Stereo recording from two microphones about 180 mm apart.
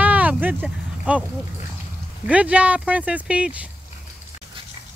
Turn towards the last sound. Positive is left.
turn(degrees=-5)  # may be behind; listen again after turning